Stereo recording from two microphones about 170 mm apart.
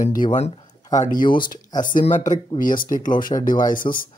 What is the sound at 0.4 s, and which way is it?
Speech, 35° left (ahead or behind).